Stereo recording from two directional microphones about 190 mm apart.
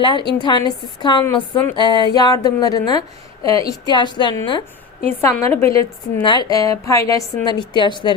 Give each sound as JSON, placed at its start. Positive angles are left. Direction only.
{"t": 0.0, "sound": "a woman's voice", "side_deg": 25}
{"t": 1.2, "sound": "a woman's voice", "side_deg": 10}
{"t": 1.7, "sound": "a woman's voice", "side_deg": 25}
{"t": 5.0, "sound": "a woman's voice", "side_deg": 15}